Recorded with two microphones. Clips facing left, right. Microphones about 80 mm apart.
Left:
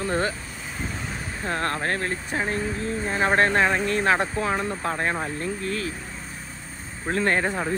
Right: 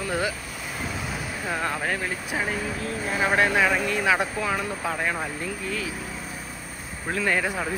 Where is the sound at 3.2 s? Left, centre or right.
Left.